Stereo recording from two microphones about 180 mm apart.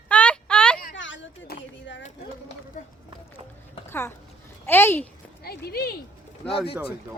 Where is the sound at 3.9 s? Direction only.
15° left (ahead or behind).